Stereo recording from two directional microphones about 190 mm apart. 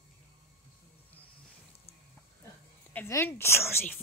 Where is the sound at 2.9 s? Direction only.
10° left (ahead or behind).